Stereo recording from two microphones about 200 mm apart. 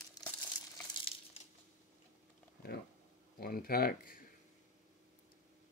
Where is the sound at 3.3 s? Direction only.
50° left (ahead or behind).